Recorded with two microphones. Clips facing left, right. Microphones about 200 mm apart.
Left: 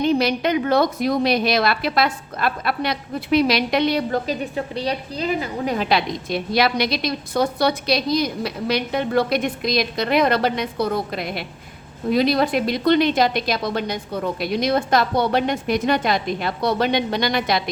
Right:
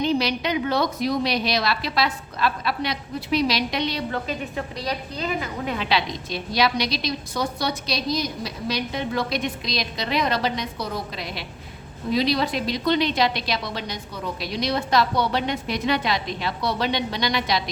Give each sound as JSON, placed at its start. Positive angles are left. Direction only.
{"t": 0.0, "sound": "a woman's voice", "side_deg": 50}
{"t": 4.1, "sound": "a woman's voice", "side_deg": 35}